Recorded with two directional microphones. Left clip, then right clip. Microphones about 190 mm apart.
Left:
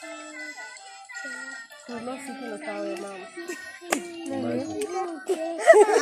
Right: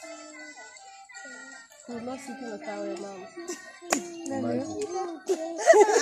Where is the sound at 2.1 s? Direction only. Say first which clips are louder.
Left 3 dB; 35° left (ahead or behind).